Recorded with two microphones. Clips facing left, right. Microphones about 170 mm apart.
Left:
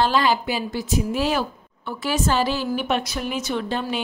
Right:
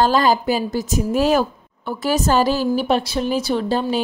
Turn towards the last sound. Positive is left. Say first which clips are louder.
# right 5 dB
turn(degrees=-35)  # may be behind; listen again after turning